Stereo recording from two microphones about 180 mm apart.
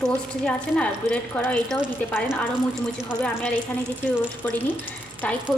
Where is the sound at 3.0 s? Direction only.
5° left (ahead or behind).